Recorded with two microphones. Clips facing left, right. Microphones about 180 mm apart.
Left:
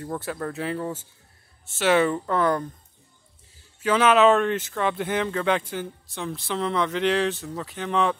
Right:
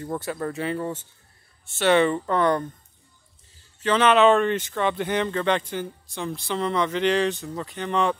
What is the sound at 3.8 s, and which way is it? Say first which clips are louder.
Speech: even; 5° left (ahead or behind).